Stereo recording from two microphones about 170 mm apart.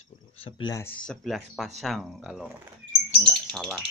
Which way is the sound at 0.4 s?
30° left (ahead or behind).